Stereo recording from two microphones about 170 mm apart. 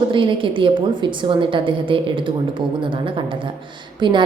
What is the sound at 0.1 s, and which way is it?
A woman's voice, 30° right (ahead or behind).